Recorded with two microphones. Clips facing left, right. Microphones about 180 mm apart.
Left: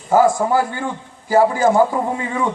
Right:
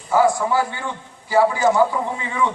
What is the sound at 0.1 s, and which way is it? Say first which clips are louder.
A man's voice: left 3 dB; 45° left (ahead or behind).